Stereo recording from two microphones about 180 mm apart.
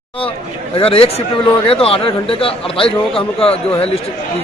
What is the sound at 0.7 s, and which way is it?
A man's voice, 30° left (ahead or behind).